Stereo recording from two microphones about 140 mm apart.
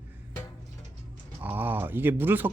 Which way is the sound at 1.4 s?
15° right (ahead or behind).